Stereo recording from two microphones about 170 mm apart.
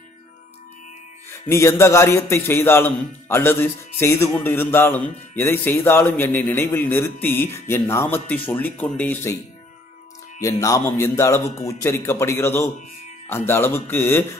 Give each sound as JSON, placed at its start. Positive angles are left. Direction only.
{"t": 1.3, "sound": "a man's voice", "side_deg": 15}
{"t": 10.4, "sound": "a man's voice", "side_deg": 20}